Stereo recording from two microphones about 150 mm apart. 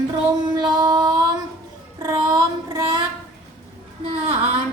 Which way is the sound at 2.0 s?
25° right (ahead or behind).